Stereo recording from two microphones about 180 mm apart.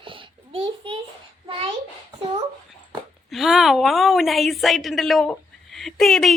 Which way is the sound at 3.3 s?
Centre (ahead or behind).